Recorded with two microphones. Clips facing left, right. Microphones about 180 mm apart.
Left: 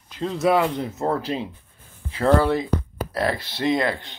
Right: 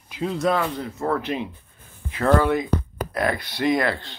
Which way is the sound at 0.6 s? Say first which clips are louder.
Left 4 dB; 20° left (ahead or behind).